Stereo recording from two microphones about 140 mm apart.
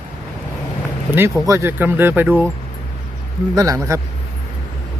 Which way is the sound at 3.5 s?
25° right (ahead or behind).